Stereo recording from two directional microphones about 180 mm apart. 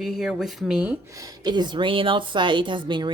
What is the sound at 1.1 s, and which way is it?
A woman's voice, 20° right (ahead or behind).